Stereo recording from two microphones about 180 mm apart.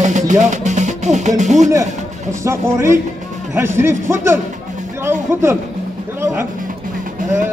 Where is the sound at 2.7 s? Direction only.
15° right (ahead or behind).